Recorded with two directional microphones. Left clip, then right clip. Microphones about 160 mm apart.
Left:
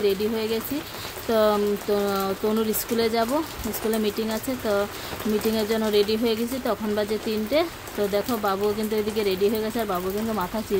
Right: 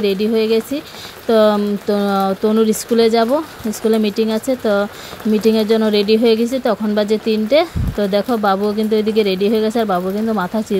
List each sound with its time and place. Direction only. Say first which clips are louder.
0.0 s speech: right 8 dB; 40° right (ahead or behind)